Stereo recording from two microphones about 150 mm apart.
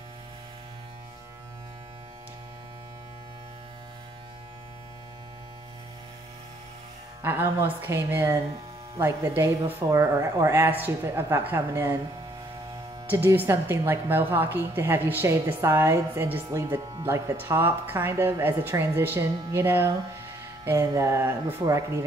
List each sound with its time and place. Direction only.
7.2 s speech: 15° right (ahead or behind)
13.1 s speech: 10° right (ahead or behind)